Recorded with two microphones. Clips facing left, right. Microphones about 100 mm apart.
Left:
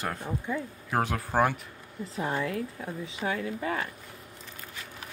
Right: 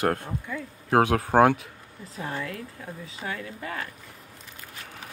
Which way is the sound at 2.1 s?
25° left (ahead or behind).